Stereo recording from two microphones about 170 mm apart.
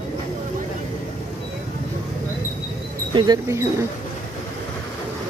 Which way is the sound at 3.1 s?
25° right (ahead or behind).